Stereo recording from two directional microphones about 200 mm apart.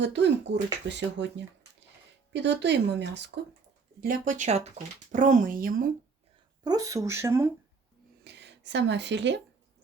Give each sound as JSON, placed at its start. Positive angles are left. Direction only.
{"t": 0.0, "sound": "speech", "side_deg": -60}
{"t": 4.0, "sound": "speech", "side_deg": -40}
{"t": 6.7, "sound": "speech", "side_deg": -15}
{"t": 8.2, "sound": "speech", "side_deg": -60}